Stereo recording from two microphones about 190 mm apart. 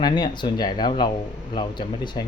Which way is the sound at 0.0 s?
20° left (ahead or behind).